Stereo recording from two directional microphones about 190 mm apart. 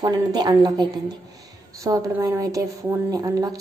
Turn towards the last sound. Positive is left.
turn(degrees=-20)  # may be behind; listen again after turning